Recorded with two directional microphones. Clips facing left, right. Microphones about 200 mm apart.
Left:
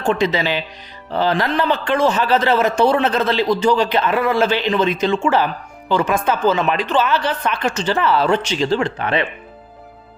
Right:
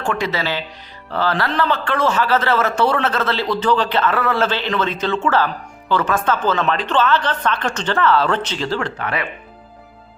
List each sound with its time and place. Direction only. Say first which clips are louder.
0.0 s a man's voice: left 4 dB; 20° left (ahead or behind)